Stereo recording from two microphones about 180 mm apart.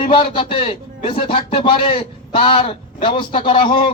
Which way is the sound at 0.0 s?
30° left (ahead or behind).